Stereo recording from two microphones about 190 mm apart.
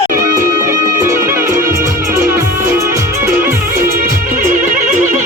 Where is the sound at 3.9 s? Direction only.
45° right (ahead or behind).